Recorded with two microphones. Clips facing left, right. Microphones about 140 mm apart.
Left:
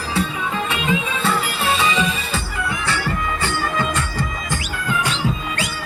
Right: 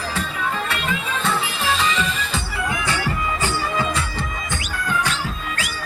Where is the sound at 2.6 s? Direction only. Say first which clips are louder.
Right 1 dB; 15° right (ahead or behind).